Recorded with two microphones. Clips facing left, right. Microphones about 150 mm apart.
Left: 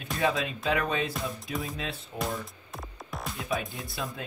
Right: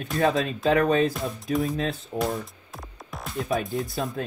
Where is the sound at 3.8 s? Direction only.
45° right (ahead or behind).